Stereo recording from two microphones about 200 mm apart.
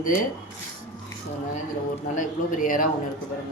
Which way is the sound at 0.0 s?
45° left (ahead or behind).